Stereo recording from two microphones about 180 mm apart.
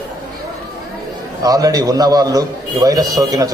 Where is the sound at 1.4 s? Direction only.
20° right (ahead or behind).